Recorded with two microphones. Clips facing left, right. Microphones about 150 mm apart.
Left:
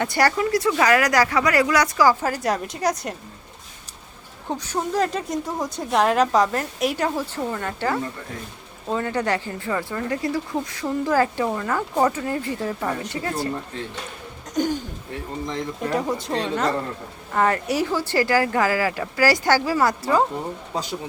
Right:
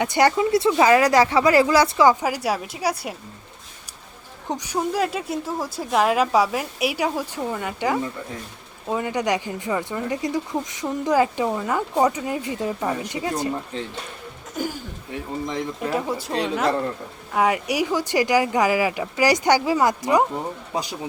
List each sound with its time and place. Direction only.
0.0 s speech: 20° right (ahead or behind)
2.2 s speech: 10° right (ahead or behind)
4.4 s speech: 15° right (ahead or behind)
14.5 s speech: 5° right (ahead or behind)